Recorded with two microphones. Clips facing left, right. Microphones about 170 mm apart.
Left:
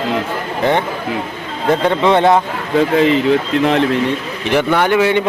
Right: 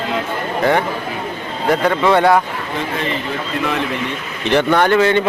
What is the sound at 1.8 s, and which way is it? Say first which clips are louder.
Speech: left 1 dB; 25° left (ahead or behind).